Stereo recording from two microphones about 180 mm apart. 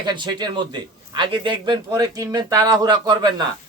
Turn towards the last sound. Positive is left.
turn(degrees=-25)  # may be behind; listen again after turning